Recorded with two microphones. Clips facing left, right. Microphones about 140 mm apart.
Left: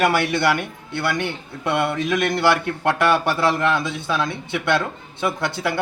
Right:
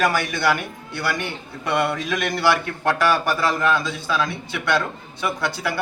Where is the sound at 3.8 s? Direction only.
60° left (ahead or behind).